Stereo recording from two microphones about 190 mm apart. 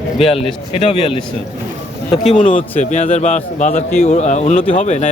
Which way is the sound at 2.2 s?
35° left (ahead or behind).